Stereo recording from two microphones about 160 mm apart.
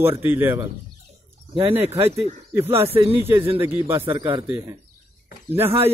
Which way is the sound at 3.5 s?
15° right (ahead or behind).